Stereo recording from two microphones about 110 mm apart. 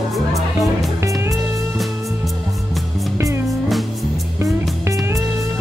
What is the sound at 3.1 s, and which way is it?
Music, 25° right (ahead or behind).